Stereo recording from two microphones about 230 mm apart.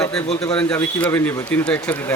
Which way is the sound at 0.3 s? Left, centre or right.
Left.